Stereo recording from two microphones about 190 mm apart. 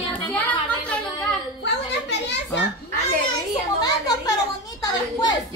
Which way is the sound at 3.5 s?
20° left (ahead or behind).